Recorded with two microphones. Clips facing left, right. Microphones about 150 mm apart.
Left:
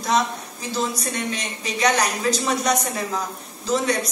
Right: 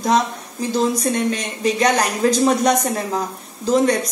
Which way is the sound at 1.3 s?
50° right (ahead or behind).